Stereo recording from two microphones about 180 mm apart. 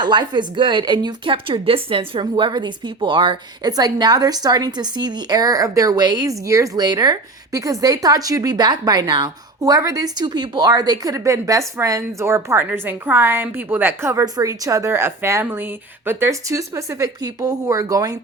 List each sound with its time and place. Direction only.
0.0 s a woman's voice: 25° right (ahead or behind)